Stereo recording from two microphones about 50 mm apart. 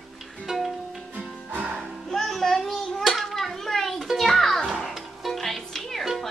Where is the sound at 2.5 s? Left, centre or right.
Centre.